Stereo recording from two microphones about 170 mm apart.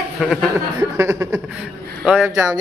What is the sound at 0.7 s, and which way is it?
Speech, 15° right (ahead or behind).